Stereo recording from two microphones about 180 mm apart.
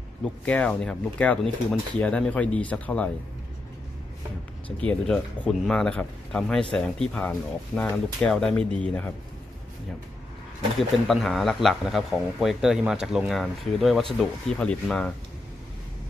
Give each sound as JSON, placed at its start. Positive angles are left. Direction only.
{"t": 0.2, "sound": "speech", "side_deg": 5}
{"t": 4.7, "sound": "speech", "side_deg": 5}
{"t": 10.8, "sound": "speech", "side_deg": 0}